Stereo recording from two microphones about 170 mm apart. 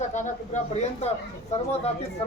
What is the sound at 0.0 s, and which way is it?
Speech, 45° left (ahead or behind).